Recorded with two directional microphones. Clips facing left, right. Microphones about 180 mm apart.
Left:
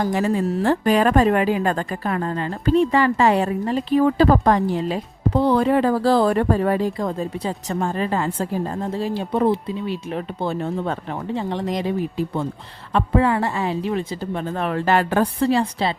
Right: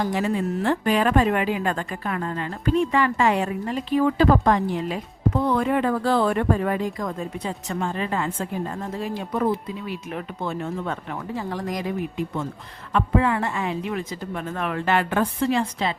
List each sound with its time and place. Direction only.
0.0 s speech: 45° left (ahead or behind)